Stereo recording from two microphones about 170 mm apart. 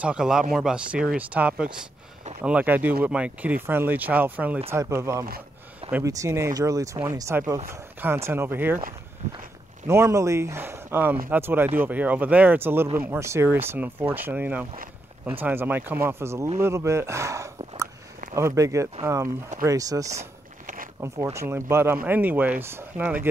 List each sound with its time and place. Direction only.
0.0 s speech: 5° right (ahead or behind)
9.8 s speech: 15° right (ahead or behind)
20.2 s a sound: 55° right (ahead or behind)
21.0 s speech: 15° right (ahead or behind)